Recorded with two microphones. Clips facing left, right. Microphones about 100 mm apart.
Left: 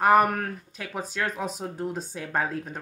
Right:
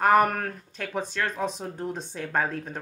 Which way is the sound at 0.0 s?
5° left (ahead or behind).